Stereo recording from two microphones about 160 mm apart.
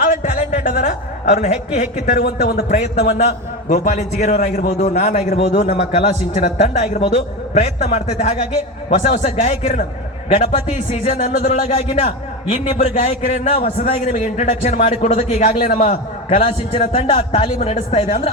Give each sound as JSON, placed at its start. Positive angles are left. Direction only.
{"t": 0.0, "sound": "a sound", "side_deg": 55}
{"t": 2.1, "sound": "speech", "side_deg": 70}
{"t": 2.7, "sound": "a man's voice", "side_deg": 45}